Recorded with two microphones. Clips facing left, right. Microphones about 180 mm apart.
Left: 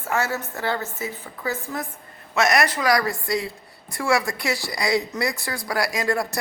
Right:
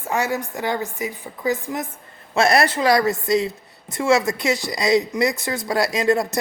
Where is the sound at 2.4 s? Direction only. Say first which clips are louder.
Right 3 dB; 30° right (ahead or behind).